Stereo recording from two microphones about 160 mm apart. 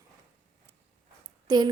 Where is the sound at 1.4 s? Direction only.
25° right (ahead or behind).